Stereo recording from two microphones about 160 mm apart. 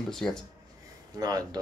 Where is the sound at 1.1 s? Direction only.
25° right (ahead or behind).